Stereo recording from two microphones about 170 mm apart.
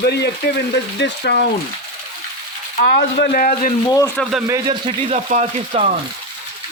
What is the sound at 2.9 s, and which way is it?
Speech, 70° left (ahead or behind).